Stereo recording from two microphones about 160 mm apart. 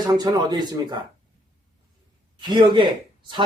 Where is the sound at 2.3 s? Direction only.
30° right (ahead or behind).